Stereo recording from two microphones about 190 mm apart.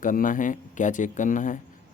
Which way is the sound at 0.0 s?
45° left (ahead or behind).